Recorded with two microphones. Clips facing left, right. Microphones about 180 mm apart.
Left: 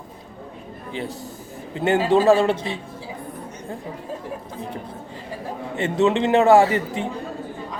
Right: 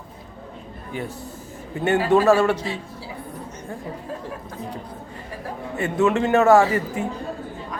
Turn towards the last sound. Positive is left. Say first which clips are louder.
# left 1 dB
turn(degrees=25)  # may be behind; listen again after turning